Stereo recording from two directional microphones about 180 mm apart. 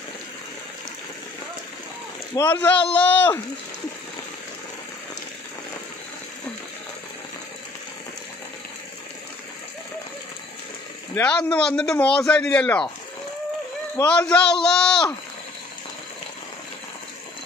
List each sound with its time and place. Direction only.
2.5 s a man's voice: 10° left (ahead or behind)
11.1 s speech: 5° left (ahead or behind)
14.0 s speech: 5° left (ahead or behind)